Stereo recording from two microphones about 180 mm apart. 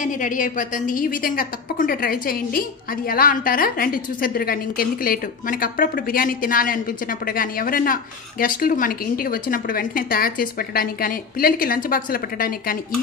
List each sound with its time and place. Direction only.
0.0 s a woman's voice: 45° left (ahead or behind)